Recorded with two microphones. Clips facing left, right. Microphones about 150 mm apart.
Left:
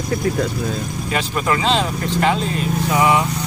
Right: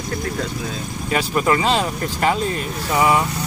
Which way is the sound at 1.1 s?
Centre (ahead or behind).